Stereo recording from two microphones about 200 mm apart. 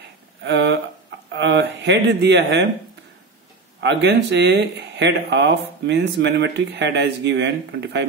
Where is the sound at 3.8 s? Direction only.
60° right (ahead or behind).